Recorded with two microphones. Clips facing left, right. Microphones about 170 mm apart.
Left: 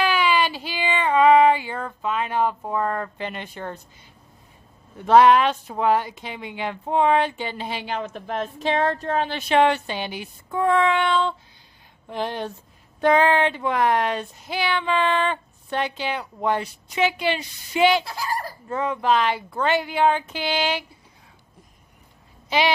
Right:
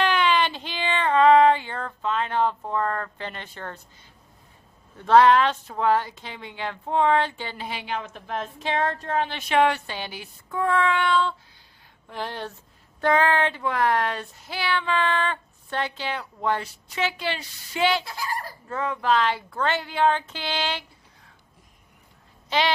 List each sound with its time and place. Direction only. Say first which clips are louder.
0.0 s female singing: left 1 dB; 5° left (ahead or behind)
4.9 s speech: left 2 dB; 15° left (ahead or behind)
7.6 s a woman's voice: left 1 dB; 35° left (ahead or behind); by 20.8 s 10° left (ahead or behind)
22.5 s speech: left 2 dB; 10° left (ahead or behind)